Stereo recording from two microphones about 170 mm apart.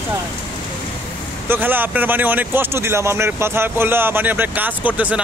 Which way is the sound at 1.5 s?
10° right (ahead or behind).